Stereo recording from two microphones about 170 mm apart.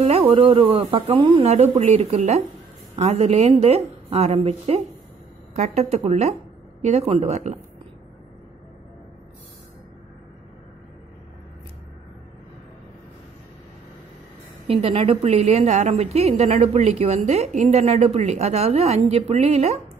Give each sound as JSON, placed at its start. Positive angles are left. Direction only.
{"t": 0.3, "sound": "a woman's voice", "side_deg": -35}
{"t": 14.7, "sound": "a woman's voice", "side_deg": -35}